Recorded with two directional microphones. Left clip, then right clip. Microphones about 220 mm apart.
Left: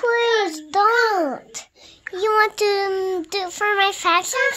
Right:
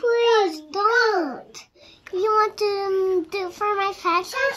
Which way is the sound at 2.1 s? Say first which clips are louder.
Left 2 dB; 35° left (ahead or behind).